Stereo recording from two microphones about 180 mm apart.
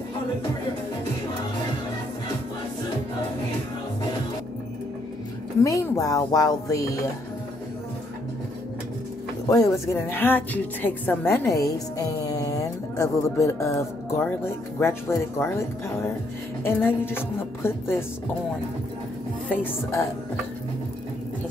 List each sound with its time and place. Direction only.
5.6 s speech: 20° left (ahead or behind)
9.5 s speech: 15° left (ahead or behind)
19.5 s speech: 10° left (ahead or behind)